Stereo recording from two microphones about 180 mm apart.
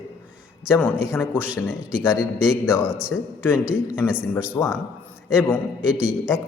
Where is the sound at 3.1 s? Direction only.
15° left (ahead or behind).